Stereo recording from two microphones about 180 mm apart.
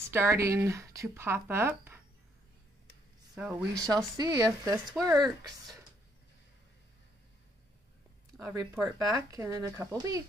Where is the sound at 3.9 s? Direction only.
20° right (ahead or behind).